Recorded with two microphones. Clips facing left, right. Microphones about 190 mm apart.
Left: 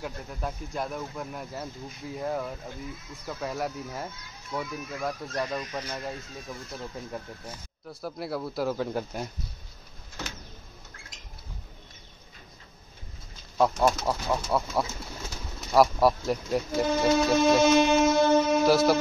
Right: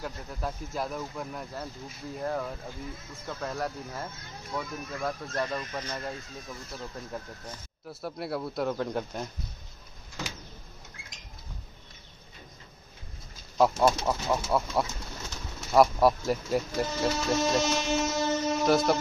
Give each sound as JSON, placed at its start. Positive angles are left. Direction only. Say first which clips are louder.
{"t": 0.0, "sound": "speech", "louder": "left 1 dB", "side_deg": 0}
{"t": 13.6, "sound": "speech", "louder": "even", "side_deg": 0}
{"t": 16.9, "sound": "a sound", "louder": "left 6 dB", "side_deg": 55}
{"t": 18.7, "sound": "speech", "louder": "left 1 dB", "side_deg": 5}